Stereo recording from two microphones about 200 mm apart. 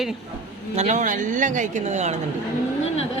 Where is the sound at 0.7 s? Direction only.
35° right (ahead or behind).